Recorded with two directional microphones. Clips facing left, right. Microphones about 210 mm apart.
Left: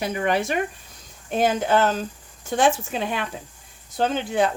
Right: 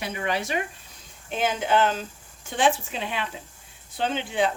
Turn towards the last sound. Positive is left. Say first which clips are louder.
# left 3 dB
turn(degrees=45)  # may be behind; listen again after turning